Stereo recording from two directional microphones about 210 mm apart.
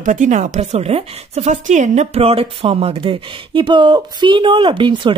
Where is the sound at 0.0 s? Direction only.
35° right (ahead or behind).